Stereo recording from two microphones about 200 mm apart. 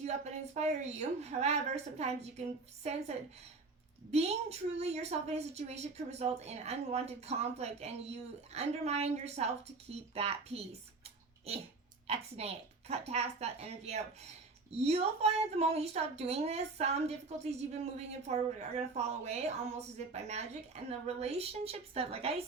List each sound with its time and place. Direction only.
0.5 s a woman's voice: 35° right (ahead or behind)
4.1 s a woman's voice: 30° right (ahead or behind)